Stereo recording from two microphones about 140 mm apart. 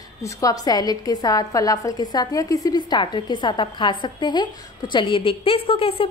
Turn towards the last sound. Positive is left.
turn(degrees=40)  # may be behind; listen again after turning